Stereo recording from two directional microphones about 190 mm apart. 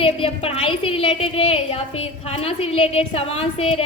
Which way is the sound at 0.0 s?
30° left (ahead or behind).